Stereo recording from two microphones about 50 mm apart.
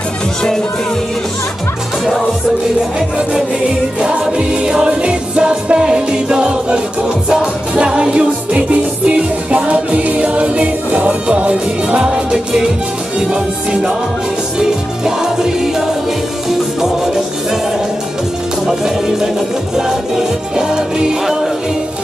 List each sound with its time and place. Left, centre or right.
4.0 s music: centre
18.7 s music: centre